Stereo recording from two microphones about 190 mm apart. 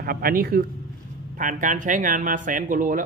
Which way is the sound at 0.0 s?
50° right (ahead or behind).